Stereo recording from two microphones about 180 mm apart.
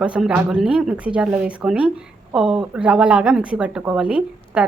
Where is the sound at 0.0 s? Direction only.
5° right (ahead or behind).